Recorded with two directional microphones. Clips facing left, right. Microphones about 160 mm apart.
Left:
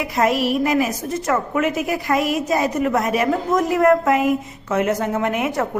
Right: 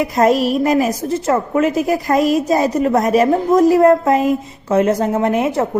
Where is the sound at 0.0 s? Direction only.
40° right (ahead or behind).